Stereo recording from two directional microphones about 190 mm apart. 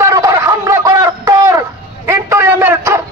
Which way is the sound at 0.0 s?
15° right (ahead or behind).